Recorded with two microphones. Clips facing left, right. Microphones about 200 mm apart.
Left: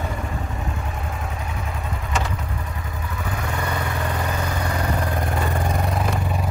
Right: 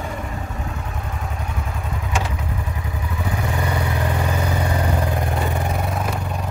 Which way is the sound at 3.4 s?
15° right (ahead or behind).